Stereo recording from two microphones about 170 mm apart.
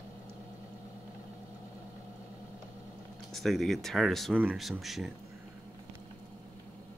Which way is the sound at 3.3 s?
Centre (ahead or behind).